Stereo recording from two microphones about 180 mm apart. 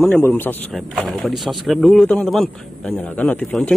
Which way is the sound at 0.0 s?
5° left (ahead or behind).